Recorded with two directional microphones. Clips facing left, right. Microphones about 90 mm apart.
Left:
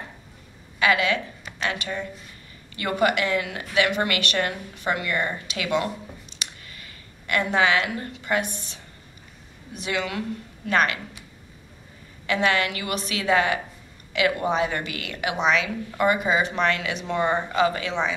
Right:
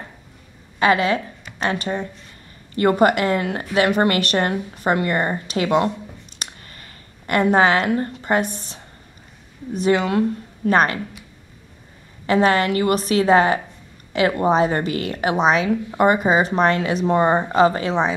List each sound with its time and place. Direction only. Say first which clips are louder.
0.7 s a woman's voice: right 4 dB; 40° right (ahead or behind)
6.4 s a sound: right 3 dB; 45° right (ahead or behind)
9.7 s a woman's voice: right 10 dB; 40° right (ahead or behind)
12.3 s a woman's voice: right 6 dB; 40° right (ahead or behind)